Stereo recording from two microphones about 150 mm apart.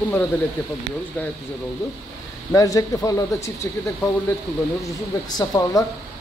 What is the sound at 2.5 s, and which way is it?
Speech, 20° left (ahead or behind).